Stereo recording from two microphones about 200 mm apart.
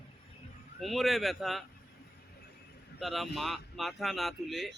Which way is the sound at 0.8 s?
Centre (ahead or behind).